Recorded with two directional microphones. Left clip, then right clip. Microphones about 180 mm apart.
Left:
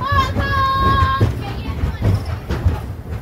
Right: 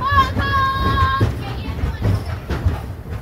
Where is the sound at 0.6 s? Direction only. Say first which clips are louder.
Left 5 dB; 20° left (ahead or behind).